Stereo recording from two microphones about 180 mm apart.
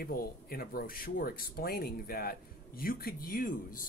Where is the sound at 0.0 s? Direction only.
55° left (ahead or behind).